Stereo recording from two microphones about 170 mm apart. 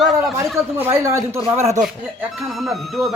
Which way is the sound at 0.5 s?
15° right (ahead or behind).